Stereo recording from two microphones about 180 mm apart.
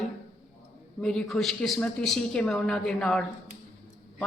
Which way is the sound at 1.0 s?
5° left (ahead or behind).